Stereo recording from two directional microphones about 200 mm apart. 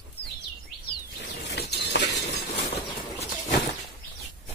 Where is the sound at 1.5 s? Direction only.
55° left (ahead or behind).